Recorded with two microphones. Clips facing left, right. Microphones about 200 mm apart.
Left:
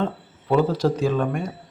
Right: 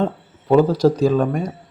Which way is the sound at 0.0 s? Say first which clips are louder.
Right 4 dB; 40° right (ahead or behind).